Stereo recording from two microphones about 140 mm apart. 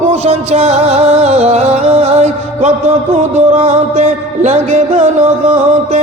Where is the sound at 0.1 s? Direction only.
50° right (ahead or behind).